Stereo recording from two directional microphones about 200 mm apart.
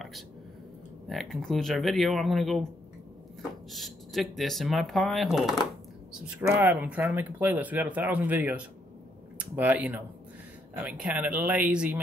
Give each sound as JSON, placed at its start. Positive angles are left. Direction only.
{"t": 1.0, "sound": "speech", "side_deg": 0}
{"t": 3.7, "sound": "speech", "side_deg": 0}